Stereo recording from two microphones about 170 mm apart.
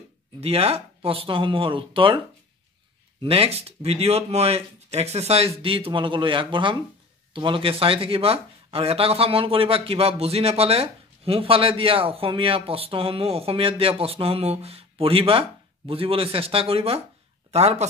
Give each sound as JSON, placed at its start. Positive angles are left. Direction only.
{"t": 0.4, "sound": "speech", "side_deg": -35}